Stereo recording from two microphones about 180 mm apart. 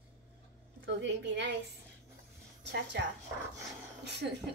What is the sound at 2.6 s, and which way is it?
Speech, 75° right (ahead or behind).